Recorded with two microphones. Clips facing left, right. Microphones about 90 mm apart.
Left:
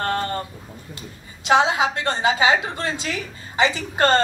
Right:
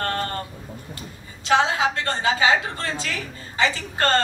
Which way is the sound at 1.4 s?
20° left (ahead or behind).